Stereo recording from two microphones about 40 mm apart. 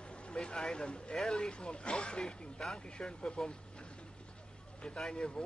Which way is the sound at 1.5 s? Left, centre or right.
Left.